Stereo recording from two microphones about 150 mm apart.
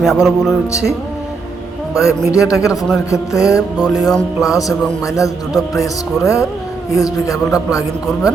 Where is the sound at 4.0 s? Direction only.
Centre (ahead or behind).